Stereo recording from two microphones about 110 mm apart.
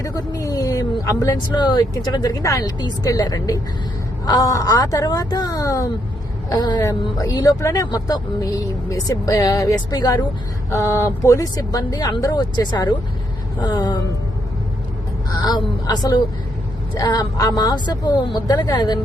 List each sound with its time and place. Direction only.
0.0 s speech: 30° left (ahead or behind)
10.7 s speech: 25° left (ahead or behind)
15.4 s speech: 40° left (ahead or behind)